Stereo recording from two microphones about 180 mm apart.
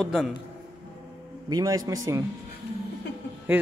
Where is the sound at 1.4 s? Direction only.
20° right (ahead or behind).